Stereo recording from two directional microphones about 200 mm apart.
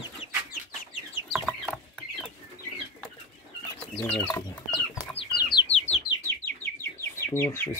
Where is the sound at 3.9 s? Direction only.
5° left (ahead or behind).